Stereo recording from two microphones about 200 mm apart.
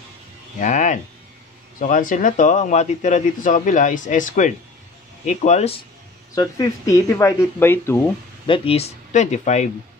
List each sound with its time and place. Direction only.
0.6 s speech: 35° left (ahead or behind)
6.3 s speech: 15° left (ahead or behind)
8.5 s speech: 25° left (ahead or behind)